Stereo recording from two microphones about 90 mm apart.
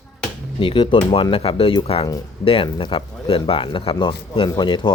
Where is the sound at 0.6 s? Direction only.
70° left (ahead or behind); by 2.7 s 90° left.